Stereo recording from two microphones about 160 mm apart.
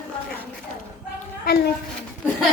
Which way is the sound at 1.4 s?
75° left (ahead or behind).